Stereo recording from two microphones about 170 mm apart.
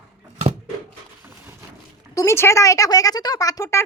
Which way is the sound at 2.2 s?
15° left (ahead or behind).